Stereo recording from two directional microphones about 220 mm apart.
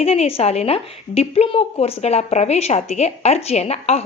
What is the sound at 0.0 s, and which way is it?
A woman's voice, 25° left (ahead or behind).